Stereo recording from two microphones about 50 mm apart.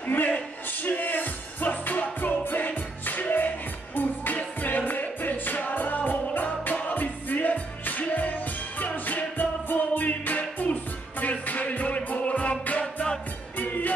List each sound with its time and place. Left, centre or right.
0.0 s speech: left
0.7 s music: left
12.8 s music: centre
13.6 s music: left